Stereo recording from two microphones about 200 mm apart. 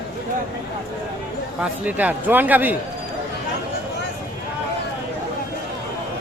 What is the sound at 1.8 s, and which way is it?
Speech, 10° right (ahead or behind).